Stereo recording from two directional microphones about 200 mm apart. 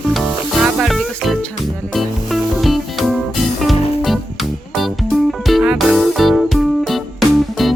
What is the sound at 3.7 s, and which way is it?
Music, 30° left (ahead or behind).